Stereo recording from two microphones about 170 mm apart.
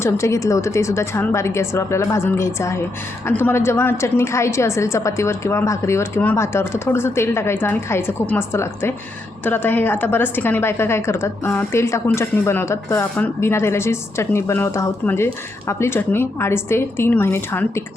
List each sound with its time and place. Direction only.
0.0 s a woman's voice: 15° left (ahead or behind)